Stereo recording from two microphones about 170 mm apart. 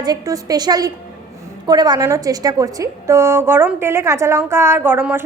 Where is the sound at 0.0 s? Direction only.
20° right (ahead or behind).